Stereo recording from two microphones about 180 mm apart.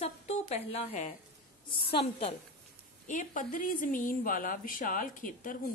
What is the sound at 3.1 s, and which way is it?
Speech, 45° left (ahead or behind).